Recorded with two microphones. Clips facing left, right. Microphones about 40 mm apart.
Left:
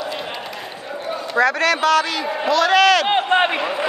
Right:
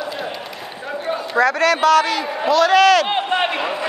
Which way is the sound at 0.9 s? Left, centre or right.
Centre.